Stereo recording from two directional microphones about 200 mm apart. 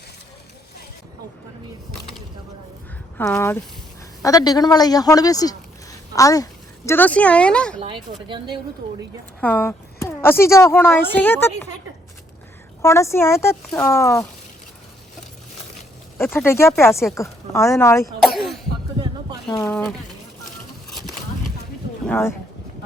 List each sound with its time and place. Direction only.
3.2 s a woman's voice: 10° left (ahead or behind)
7.8 s speech: 25° right (ahead or behind)
9.4 s speech: 10° left (ahead or behind)
12.8 s speech: 15° left (ahead or behind)
16.1 s speech: 10° left (ahead or behind)
18.2 s cough: centre (ahead or behind)
19.5 s a woman's voice: 20° left (ahead or behind)
22.0 s speech: 5° left (ahead or behind)